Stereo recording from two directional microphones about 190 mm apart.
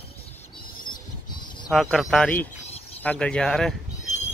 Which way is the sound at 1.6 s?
Centre (ahead or behind).